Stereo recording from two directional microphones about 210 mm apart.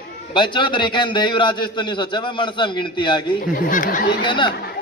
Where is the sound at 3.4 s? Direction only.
40° left (ahead or behind).